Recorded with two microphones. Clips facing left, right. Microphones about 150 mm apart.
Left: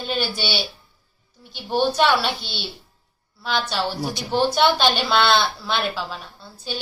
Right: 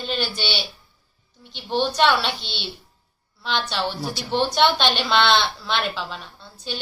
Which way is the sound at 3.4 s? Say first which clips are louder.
Left 1 dB; 5° left (ahead or behind).